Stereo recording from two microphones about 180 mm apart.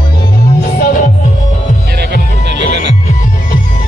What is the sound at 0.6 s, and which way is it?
Music, 55° left (ahead or behind).